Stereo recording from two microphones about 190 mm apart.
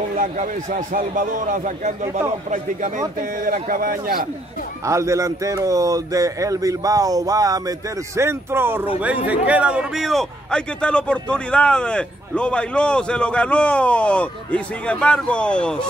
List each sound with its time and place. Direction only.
0.2 s a man's voice: 45° right (ahead or behind)
4.8 s speech: 15° right (ahead or behind); by 15.9 s 5° left (ahead or behind)